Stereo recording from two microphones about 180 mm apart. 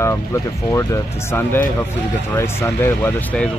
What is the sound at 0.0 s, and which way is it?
Speech, 15° left (ahead or behind).